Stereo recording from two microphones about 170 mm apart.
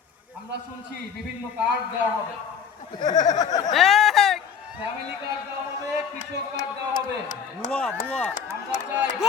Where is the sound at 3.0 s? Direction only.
25° left (ahead or behind).